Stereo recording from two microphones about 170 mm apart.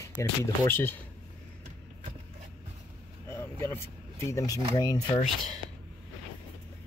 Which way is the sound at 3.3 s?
15° left (ahead or behind).